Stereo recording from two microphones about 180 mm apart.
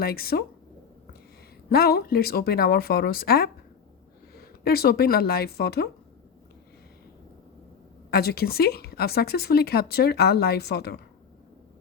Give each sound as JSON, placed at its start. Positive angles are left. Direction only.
{"t": 0.0, "sound": "a woman's voice", "side_deg": 55}
{"t": 1.7, "sound": "a woman's voice", "side_deg": 60}
{"t": 8.1, "sound": "a woman's voice", "side_deg": 60}